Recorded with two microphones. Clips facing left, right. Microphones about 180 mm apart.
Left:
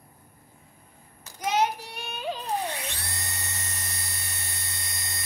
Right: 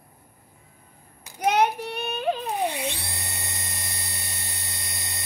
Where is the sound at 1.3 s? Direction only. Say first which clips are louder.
Right 4 dB; 60° right (ahead or behind).